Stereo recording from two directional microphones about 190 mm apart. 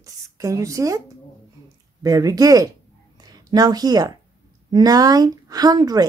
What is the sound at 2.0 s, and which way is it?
A woman's voice, 20° right (ahead or behind).